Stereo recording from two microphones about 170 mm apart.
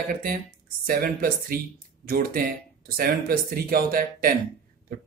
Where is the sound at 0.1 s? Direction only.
55° right (ahead or behind).